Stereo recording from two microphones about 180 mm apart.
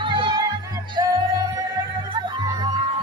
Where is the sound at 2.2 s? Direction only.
25° right (ahead or behind).